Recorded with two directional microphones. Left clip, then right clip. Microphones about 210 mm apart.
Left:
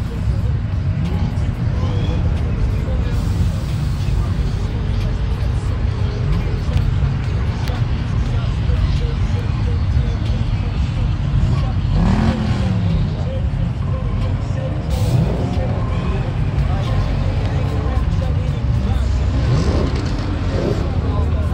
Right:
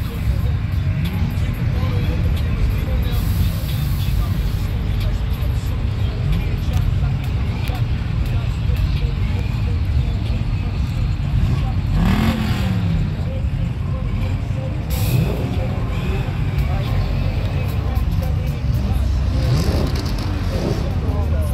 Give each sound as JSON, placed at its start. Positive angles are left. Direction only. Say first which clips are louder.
{"t": 12.0, "sound": "vehicle", "louder": "left 1 dB", "side_deg": 5}
{"t": 19.5, "sound": "vehicle", "louder": "left 2 dB", "side_deg": -45}